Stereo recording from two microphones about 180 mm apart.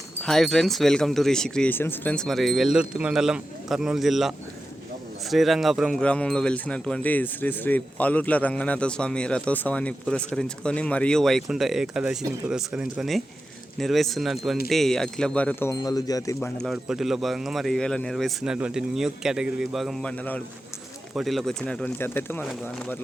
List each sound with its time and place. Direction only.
0.2 s livestock: centre (ahead or behind)
15.7 s speech: 20° left (ahead or behind)
16.6 s livestock: centre (ahead or behind)
21.2 s speech: centre (ahead or behind)